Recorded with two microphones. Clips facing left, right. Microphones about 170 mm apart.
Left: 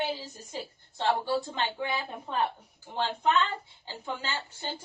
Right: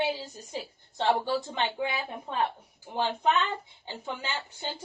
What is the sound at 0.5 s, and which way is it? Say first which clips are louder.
A woman's voice: right 1 dB; 15° right (ahead or behind).